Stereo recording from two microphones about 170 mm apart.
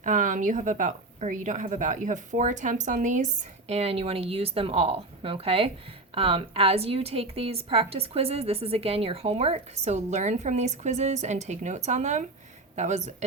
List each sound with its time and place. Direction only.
0.0 s a woman's voice: 50° right (ahead or behind)